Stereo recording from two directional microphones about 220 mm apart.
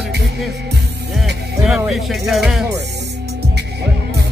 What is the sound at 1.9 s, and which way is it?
Speech, centre (ahead or behind).